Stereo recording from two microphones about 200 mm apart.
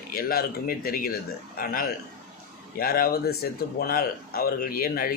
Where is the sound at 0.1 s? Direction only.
50° left (ahead or behind).